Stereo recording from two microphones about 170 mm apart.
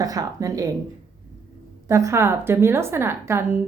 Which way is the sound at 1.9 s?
15° right (ahead or behind).